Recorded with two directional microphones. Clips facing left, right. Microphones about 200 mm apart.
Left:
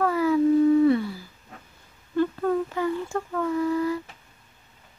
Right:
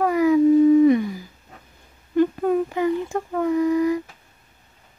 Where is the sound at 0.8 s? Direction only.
15° right (ahead or behind).